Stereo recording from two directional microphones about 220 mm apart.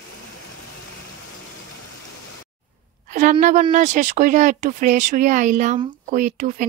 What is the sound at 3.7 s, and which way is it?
Speech, 35° right (ahead or behind).